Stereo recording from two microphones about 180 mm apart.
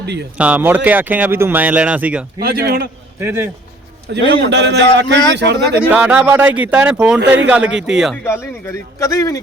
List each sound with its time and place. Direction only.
0.0 s speech: 70° right (ahead or behind)
0.3 s speech: 10° right (ahead or behind)
2.4 s a man's voice: 60° right (ahead or behind)
3.2 s speech: 15° right (ahead or behind)
4.1 s speech: 75° right (ahead or behind)
5.9 s speech: 5° right (ahead or behind)
7.2 s speech: 80° right
7.4 s speech: 5° right (ahead or behind)
8.1 s speech: 15° left (ahead or behind)